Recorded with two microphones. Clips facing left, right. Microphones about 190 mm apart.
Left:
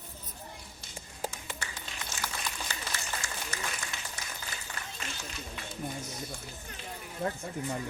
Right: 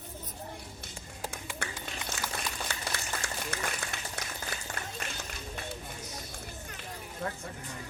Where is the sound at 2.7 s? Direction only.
60° right (ahead or behind).